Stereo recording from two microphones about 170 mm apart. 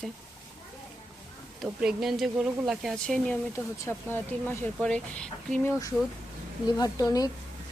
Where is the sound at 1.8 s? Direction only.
5° right (ahead or behind).